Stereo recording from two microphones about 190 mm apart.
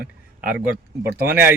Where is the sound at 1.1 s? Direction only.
55° right (ahead or behind).